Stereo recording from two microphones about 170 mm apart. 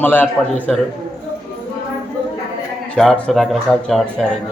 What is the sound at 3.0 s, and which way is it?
A man's voice, 5° left (ahead or behind).